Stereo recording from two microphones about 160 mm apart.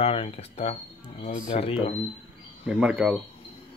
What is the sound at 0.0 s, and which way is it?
Speech, 35° left (ahead or behind).